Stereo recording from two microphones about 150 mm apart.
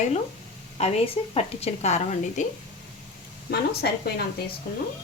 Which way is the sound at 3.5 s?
90° left.